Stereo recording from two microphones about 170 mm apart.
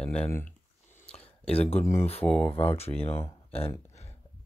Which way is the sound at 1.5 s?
40° left (ahead or behind).